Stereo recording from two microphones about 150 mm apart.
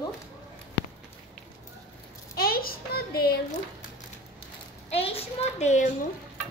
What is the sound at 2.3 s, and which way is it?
A child's voice, 85° left.